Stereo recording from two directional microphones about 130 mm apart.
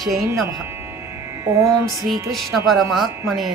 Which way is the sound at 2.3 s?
Centre (ahead or behind).